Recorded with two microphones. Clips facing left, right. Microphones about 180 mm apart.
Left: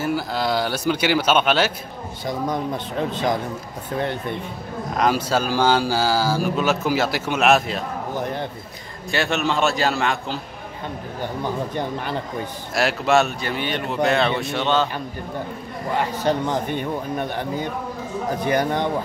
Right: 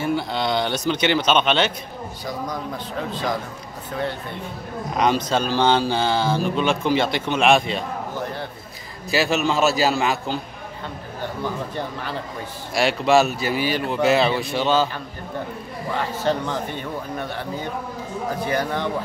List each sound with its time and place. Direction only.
0.0 s a man's voice: 5° left (ahead or behind)
2.2 s speech: 25° left (ahead or behind)
4.9 s speech: 5° left (ahead or behind)
9.1 s speech: centre (ahead or behind)
11.7 s a man's voice: 15° left (ahead or behind)
12.7 s speech: centre (ahead or behind)
16.2 s a man's voice: 15° left (ahead or behind)
18.4 s speech: 20° left (ahead or behind)